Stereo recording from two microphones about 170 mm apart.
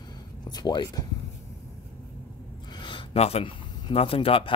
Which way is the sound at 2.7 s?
30° left (ahead or behind).